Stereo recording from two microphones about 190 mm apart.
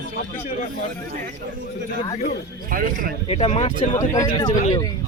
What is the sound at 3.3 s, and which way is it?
Speech, 35° left (ahead or behind).